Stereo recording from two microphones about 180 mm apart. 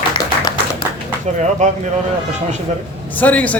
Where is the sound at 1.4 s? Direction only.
40° right (ahead or behind).